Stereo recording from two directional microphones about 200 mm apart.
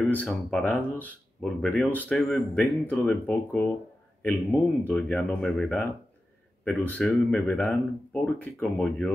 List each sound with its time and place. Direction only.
0.1 s speech: 5° left (ahead or behind)